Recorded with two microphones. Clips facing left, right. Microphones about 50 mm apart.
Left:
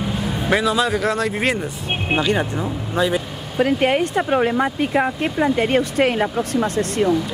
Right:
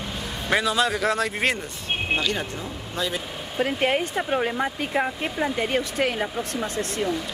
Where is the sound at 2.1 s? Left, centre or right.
Left.